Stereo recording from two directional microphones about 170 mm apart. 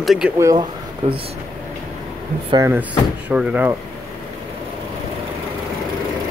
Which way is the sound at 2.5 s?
15° right (ahead or behind).